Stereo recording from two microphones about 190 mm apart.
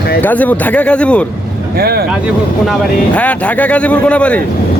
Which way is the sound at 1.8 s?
55° right (ahead or behind).